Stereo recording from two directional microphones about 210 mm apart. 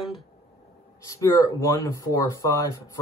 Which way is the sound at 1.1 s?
15° left (ahead or behind).